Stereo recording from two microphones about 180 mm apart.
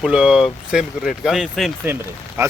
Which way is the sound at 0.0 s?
5° right (ahead or behind).